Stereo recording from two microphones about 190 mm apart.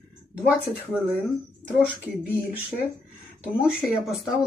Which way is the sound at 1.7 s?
5° right (ahead or behind).